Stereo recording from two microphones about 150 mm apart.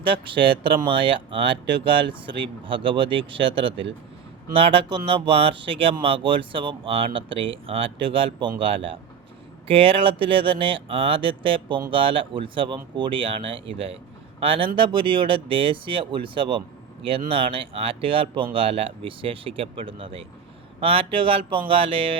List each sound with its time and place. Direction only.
0.0 s speech: 35° right (ahead or behind)